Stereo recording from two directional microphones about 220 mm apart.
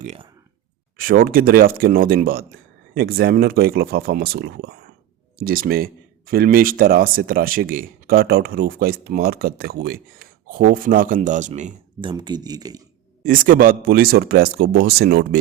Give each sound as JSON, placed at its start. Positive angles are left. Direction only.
{"t": 0.0, "sound": "a sound", "side_deg": -30}
{"t": 0.9, "sound": "speech", "side_deg": -40}
{"t": 13.2, "sound": "speech", "side_deg": -40}